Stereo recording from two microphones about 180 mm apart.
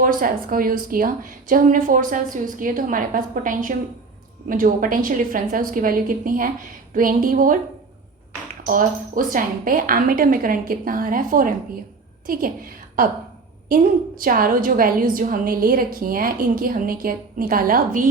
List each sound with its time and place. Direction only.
0.0 s a woman's voice: 50° right (ahead or behind)
8.6 s a woman's voice: 50° right (ahead or behind)
14.2 s a woman's voice: 50° right (ahead or behind)